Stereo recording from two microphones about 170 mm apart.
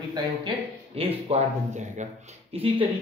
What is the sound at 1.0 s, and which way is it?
Speech, 35° right (ahead or behind).